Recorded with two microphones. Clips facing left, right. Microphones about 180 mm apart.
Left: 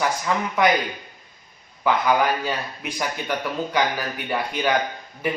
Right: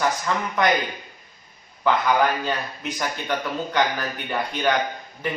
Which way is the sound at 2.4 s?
10° left (ahead or behind).